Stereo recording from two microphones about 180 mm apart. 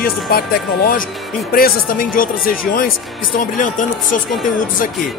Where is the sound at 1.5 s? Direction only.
55° left (ahead or behind).